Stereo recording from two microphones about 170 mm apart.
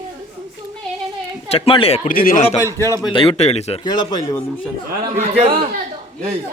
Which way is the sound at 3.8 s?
25° left (ahead or behind).